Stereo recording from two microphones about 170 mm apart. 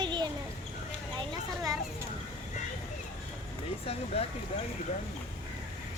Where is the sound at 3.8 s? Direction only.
35° left (ahead or behind).